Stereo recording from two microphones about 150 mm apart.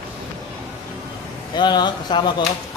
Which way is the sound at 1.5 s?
30° left (ahead or behind).